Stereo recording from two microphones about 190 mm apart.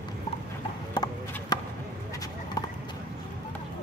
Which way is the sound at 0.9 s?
20° left (ahead or behind).